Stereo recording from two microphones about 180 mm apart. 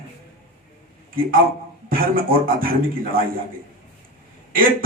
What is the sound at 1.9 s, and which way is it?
Speech, 50° right (ahead or behind).